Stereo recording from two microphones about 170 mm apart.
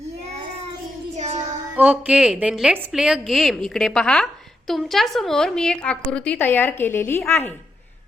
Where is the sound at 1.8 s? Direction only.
10° right (ahead or behind); by 7.5 s 15° left (ahead or behind).